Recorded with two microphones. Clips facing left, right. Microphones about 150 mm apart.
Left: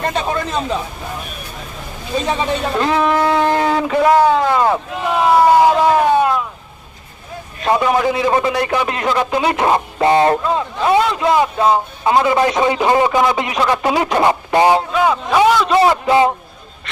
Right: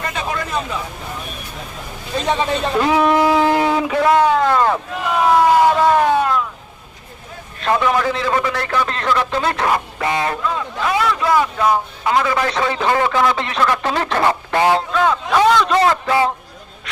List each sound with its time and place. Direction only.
0.0 s speech: 35° left (ahead or behind)
2.7 s a sound: 5° right (ahead or behind)
3.9 s speech: 5° left (ahead or behind)
7.6 s speech: 15° left (ahead or behind)
9.6 s speech: 30° left (ahead or behind)